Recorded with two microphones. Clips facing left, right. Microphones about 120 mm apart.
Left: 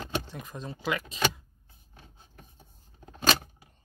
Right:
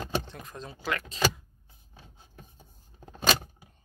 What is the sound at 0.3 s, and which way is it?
Speech, 5° left (ahead or behind).